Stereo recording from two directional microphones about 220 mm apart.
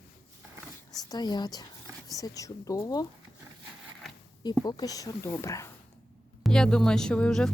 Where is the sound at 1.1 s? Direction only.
20° left (ahead or behind).